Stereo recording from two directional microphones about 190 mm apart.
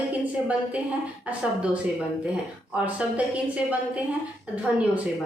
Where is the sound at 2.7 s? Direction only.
5° right (ahead or behind).